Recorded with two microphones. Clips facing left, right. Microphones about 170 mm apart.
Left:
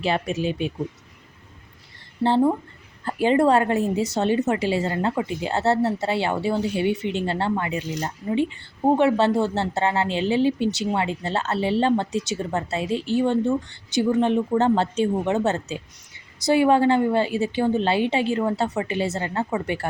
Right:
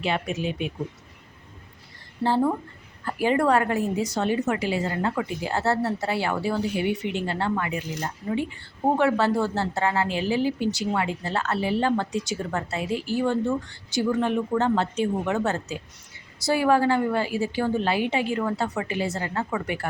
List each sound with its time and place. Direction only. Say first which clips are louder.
0.0 s speech: left 3 dB; 30° left (ahead or behind)
2.2 s speech: left 3 dB; 25° left (ahead or behind)